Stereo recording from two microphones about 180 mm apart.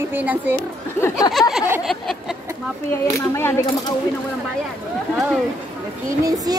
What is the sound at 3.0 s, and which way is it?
Speech, 15° left (ahead or behind).